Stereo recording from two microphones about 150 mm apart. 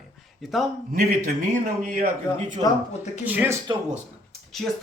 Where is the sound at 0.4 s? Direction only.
Centre (ahead or behind).